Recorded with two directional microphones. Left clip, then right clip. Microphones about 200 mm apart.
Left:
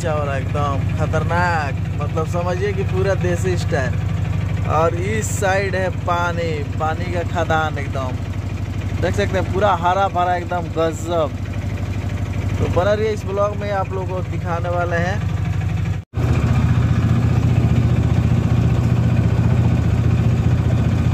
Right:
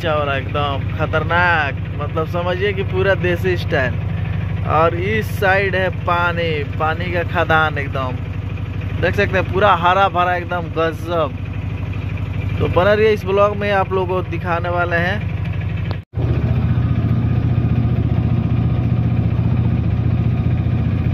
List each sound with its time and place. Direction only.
0.0 s speech: 5° left (ahead or behind)
12.7 s speech: 5° right (ahead or behind)